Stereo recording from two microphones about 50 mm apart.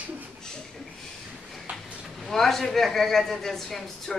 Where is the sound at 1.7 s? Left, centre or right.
Right.